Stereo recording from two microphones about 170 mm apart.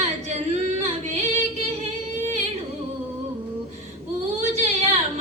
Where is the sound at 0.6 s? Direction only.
40° right (ahead or behind).